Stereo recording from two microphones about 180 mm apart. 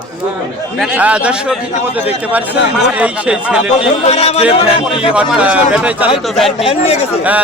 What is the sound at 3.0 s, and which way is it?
Speech, 5° right (ahead or behind).